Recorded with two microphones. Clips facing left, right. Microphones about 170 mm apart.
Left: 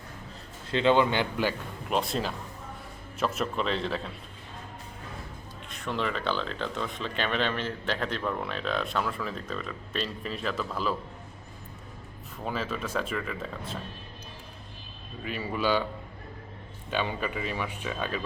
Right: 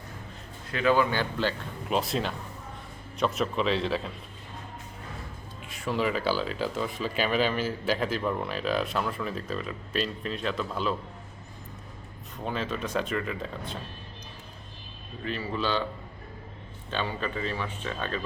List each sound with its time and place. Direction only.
0.7 s a man's voice: 25° left (ahead or behind)
1.9 s speech: centre (ahead or behind)
5.6 s speech: 5° right (ahead or behind)
12.5 s speech: centre (ahead or behind)
15.2 s speech: 10° left (ahead or behind)
16.9 s speech: 10° left (ahead or behind)